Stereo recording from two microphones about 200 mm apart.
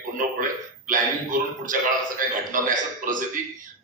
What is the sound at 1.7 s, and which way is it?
A man's voice, 45° right (ahead or behind).